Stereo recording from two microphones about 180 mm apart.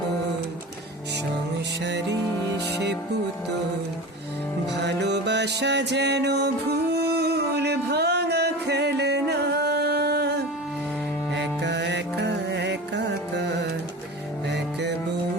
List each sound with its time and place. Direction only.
1.8 s music: 75° right (ahead or behind)
4.8 s music: 75° right (ahead or behind)